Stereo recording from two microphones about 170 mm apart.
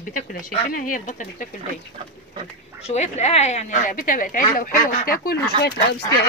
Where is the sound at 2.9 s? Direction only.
40° left (ahead or behind); by 5.4 s 55° left (ahead or behind).